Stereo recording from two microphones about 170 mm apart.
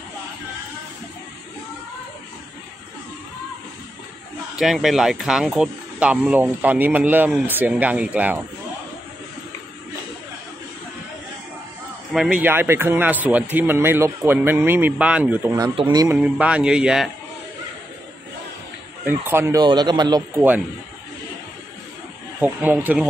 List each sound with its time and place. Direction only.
4.6 s speech: centre (ahead or behind)
12.1 s speech: 5° right (ahead or behind)
15.7 s speech: 25° right (ahead or behind)
16.2 s a man's voice: 5° right (ahead or behind)
19.0 s speech: 15° right (ahead or behind)
22.4 s speech: 10° right (ahead or behind)